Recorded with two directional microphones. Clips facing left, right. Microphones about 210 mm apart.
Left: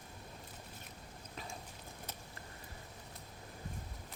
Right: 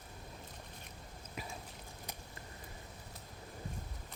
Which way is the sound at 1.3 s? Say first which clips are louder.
Right 2 dB; 10° right (ahead or behind).